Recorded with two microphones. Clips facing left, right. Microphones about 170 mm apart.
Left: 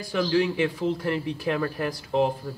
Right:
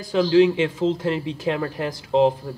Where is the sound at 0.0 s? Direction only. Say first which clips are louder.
Right 7 dB; 20° right (ahead or behind).